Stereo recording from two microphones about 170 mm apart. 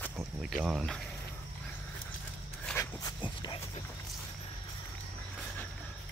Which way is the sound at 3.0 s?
25° left (ahead or behind).